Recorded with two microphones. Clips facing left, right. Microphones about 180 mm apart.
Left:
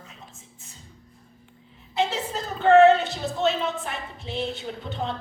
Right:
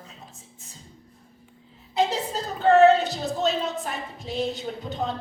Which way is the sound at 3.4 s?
40° right (ahead or behind).